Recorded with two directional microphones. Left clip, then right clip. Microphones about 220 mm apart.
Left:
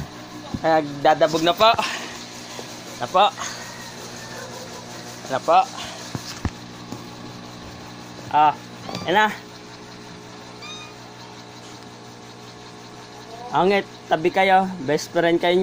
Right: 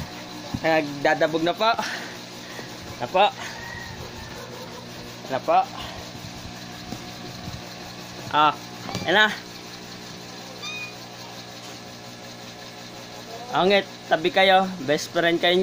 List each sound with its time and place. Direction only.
0.6 s speech: centre (ahead or behind)
3.0 s speech: 10° right (ahead or behind)
8.3 s speech: 15° right (ahead or behind)
9.0 s speech: centre (ahead or behind)
13.5 s speech: 5° left (ahead or behind)